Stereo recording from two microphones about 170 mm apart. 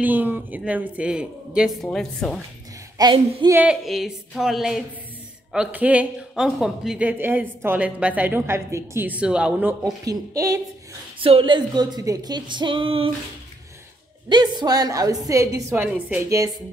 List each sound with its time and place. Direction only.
0.0 s speech: 10° right (ahead or behind)
1.9 s a sound: 5° left (ahead or behind)
3.0 s a woman's voice: 25° right (ahead or behind)
3.5 s a sound: 5° right (ahead or behind)
5.5 s speech: 5° right (ahead or behind)
9.8 s a woman's voice: 20° right (ahead or behind)
11.1 s a woman's voice: 30° right (ahead or behind)
14.3 s a woman's voice: 25° right (ahead or behind)